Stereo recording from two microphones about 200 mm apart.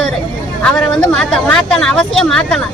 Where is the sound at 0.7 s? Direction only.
5° left (ahead or behind).